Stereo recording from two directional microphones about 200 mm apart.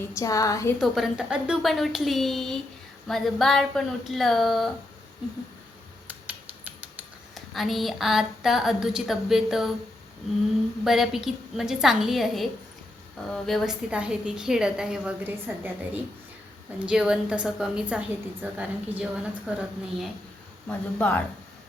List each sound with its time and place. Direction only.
0.2 s speech: 15° left (ahead or behind)
0.8 s a woman's voice: centre (ahead or behind)
6.1 s a sound: 10° right (ahead or behind)
7.3 s a woman's voice: centre (ahead or behind)
10.8 s a woman's voice: centre (ahead or behind)
16.8 s a woman's voice: 5° right (ahead or behind)
20.7 s speech: 10° left (ahead or behind)